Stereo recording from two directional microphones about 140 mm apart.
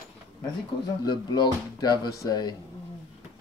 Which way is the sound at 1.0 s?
30° left (ahead or behind).